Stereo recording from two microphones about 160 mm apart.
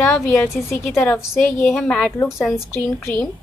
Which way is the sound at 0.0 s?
10° left (ahead or behind).